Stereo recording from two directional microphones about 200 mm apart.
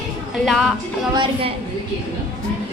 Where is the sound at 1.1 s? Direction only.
25° right (ahead or behind).